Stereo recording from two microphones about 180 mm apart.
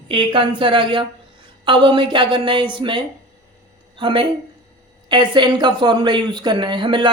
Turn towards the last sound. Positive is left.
turn(degrees=-25)  # may be behind; listen again after turning